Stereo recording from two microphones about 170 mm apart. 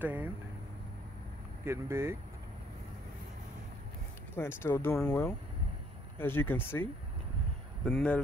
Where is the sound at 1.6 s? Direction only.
15° right (ahead or behind).